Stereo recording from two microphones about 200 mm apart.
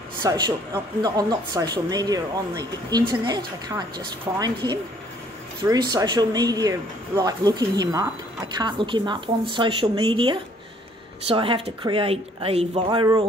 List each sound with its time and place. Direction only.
0.2 s a woman's voice: 20° right (ahead or behind)